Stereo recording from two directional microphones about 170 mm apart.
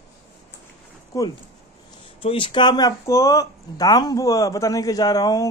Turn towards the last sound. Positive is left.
turn(degrees=20)  # may be behind; listen again after turning